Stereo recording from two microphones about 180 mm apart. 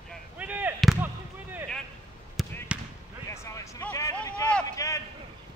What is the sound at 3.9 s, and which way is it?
Vehicle, 20° left (ahead or behind).